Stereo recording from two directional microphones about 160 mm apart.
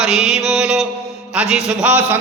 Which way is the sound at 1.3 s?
5° right (ahead or behind).